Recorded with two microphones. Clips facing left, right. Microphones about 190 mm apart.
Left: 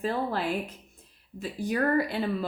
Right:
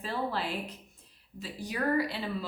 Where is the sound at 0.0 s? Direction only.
50° left (ahead or behind).